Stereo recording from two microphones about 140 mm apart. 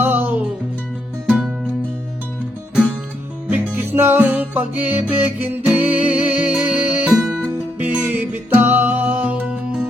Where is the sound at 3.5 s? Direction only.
15° right (ahead or behind).